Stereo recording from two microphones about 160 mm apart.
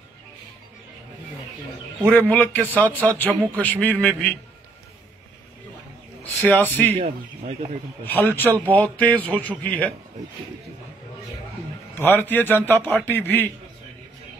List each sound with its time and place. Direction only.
2.1 s a man's voice: 10° left (ahead or behind)
6.4 s a man's voice: 10° left (ahead or behind)
6.9 s speech: 40° right (ahead or behind)
8.0 s a man's voice: 10° left (ahead or behind)
12.0 s a man's voice: 15° left (ahead or behind)